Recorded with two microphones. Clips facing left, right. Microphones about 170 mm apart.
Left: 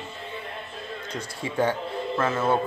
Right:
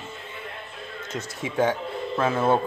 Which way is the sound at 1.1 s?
20° right (ahead or behind).